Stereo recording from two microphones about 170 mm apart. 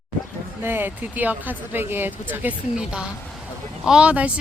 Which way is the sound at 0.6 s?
10° right (ahead or behind).